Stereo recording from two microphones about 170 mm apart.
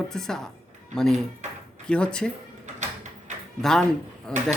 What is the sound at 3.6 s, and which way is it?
Speech, 5° left (ahead or behind).